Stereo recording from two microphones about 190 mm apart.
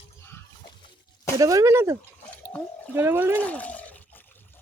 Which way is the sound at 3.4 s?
5° left (ahead or behind).